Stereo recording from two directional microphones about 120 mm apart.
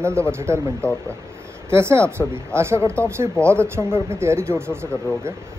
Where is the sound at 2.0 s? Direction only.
10° left (ahead or behind).